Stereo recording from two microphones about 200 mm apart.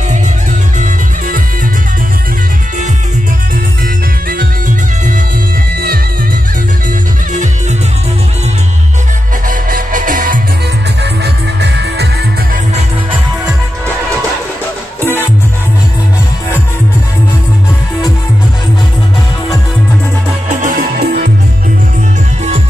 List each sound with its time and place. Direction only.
9.5 s music: 40° right (ahead or behind)
20.6 s music: 45° right (ahead or behind)